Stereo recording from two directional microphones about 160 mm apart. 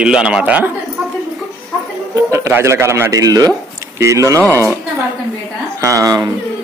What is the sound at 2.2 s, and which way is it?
A man's voice, 15° right (ahead or behind).